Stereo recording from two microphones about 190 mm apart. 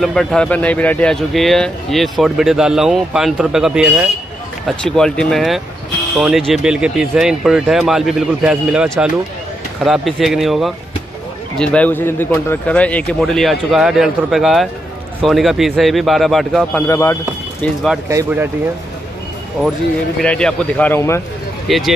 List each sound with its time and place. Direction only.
0.0 s speech: 5° left (ahead or behind)
16.8 s speech: 15° left (ahead or behind)
18.0 s speech: 15° right (ahead or behind)
20.2 s speech: 5° left (ahead or behind)
21.6 s speech: centre (ahead or behind)